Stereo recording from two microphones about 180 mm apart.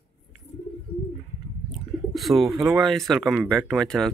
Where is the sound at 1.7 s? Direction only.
Centre (ahead or behind).